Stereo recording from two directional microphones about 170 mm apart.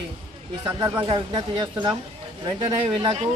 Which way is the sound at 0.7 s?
15° right (ahead or behind).